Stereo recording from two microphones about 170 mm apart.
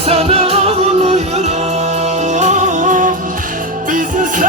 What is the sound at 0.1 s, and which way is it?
Music, 40° right (ahead or behind).